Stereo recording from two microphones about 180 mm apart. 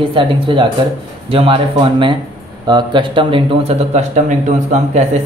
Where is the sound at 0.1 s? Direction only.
25° right (ahead or behind).